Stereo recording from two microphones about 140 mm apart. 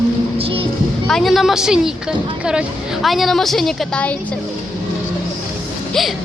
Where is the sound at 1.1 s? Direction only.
Centre (ahead or behind).